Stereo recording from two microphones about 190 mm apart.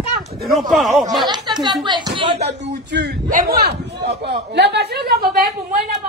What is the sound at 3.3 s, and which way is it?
A man's voice, 50° right (ahead or behind).